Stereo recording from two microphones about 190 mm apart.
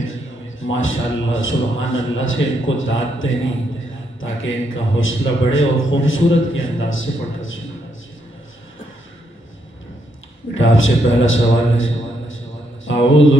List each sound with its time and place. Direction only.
0.0 s a man's voice: 90° left
10.5 s a man's voice: 90° left
12.8 s mantra: 90° left